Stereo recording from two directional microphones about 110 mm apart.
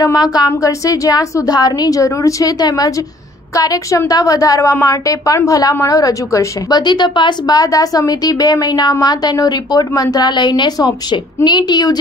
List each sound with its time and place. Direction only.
0.1 s a woman's voice: 35° left (ahead or behind)